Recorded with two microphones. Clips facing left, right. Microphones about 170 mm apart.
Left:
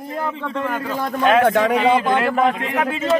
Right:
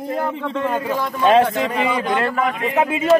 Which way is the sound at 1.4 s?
65° left (ahead or behind).